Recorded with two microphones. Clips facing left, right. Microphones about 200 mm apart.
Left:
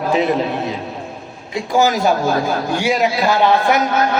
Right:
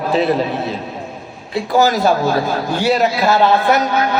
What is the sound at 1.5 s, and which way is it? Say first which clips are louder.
A man's voice: right 1 dB; 15° left (ahead or behind).